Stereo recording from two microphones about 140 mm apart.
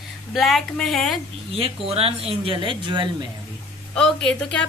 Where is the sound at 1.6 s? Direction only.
45° right (ahead or behind).